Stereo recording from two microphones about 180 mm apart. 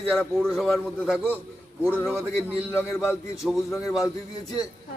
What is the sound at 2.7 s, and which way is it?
Speech, 15° left (ahead or behind).